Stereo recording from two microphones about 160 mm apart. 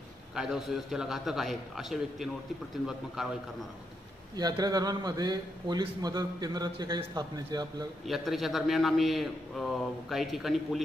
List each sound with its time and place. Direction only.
0.3 s a man's voice: centre (ahead or behind)
4.4 s a man's voice: 25° right (ahead or behind)
8.1 s a man's voice: centre (ahead or behind)